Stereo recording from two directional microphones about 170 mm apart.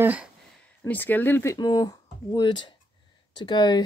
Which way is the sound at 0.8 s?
10° left (ahead or behind).